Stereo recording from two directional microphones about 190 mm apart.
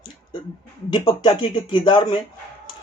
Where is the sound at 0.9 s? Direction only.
25° left (ahead or behind).